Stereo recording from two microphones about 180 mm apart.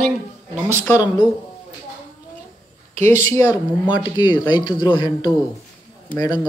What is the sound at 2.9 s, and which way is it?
Speech, 40° right (ahead or behind).